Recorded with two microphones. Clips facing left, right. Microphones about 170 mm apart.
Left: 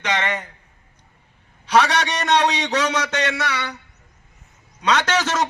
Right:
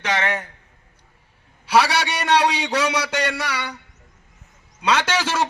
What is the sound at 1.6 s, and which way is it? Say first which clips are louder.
A man's voice: even; 10° right (ahead or behind).